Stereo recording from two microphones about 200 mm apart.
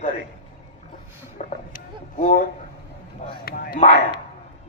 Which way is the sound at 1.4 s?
35° left (ahead or behind).